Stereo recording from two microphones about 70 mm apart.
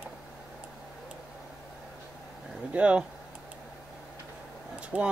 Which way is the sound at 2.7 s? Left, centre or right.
Centre.